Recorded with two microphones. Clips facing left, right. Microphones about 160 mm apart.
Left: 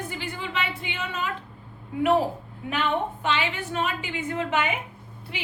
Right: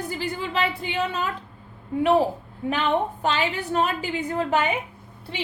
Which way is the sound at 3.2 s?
40° right (ahead or behind).